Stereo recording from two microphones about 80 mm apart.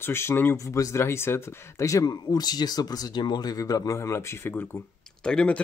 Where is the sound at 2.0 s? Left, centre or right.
Left.